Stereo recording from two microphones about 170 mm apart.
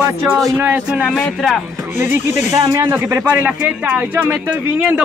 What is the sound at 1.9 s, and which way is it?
Speech, 15° right (ahead or behind).